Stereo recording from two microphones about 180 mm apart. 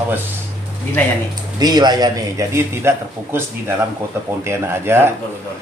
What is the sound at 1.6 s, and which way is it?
A man's voice, 20° right (ahead or behind).